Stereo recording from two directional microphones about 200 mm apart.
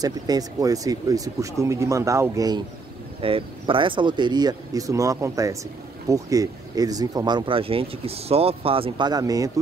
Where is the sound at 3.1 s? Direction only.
25° right (ahead or behind).